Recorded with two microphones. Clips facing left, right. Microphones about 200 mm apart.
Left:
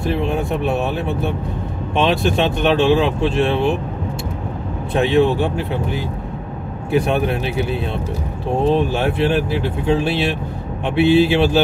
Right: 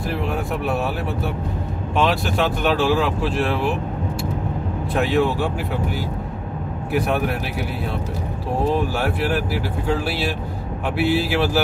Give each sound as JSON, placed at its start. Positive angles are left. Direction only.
{"t": 0.0, "sound": "speech", "side_deg": 25}
{"t": 4.9, "sound": "speech", "side_deg": 20}